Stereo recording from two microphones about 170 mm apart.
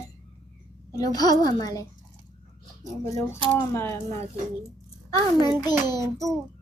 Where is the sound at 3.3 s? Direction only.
15° left (ahead or behind).